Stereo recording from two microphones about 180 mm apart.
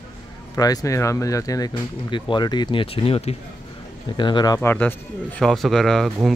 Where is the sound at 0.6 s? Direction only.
20° left (ahead or behind).